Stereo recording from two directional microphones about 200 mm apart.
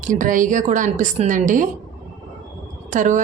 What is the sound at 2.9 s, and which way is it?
Speech, 40° right (ahead or behind).